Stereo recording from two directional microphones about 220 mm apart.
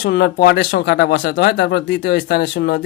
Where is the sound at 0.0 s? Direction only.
45° left (ahead or behind).